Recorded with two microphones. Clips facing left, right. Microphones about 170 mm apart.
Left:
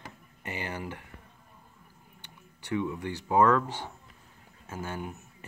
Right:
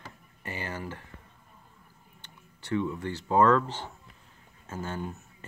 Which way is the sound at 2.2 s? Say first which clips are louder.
Even; 15° left (ahead or behind).